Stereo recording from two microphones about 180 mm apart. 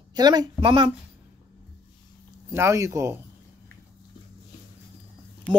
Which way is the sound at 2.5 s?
15° right (ahead or behind).